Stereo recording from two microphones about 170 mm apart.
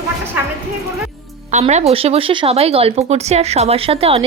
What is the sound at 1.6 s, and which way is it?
Speech, 40° right (ahead or behind).